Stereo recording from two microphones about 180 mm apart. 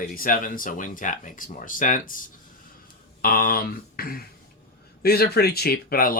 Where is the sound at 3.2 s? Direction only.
55° left (ahead or behind).